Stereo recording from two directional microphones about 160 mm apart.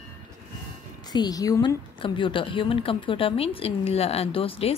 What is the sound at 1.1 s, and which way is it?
A woman's voice, 25° left (ahead or behind).